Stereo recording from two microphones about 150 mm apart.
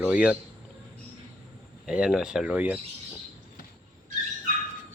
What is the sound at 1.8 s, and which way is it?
Speech, 5° right (ahead or behind).